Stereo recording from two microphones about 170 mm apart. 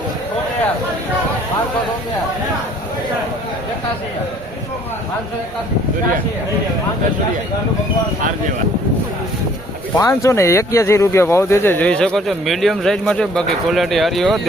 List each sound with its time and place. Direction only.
10.0 s speech: 15° left (ahead or behind); by 14.4 s centre (ahead or behind)